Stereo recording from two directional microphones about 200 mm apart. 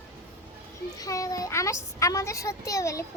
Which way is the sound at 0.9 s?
15° left (ahead or behind).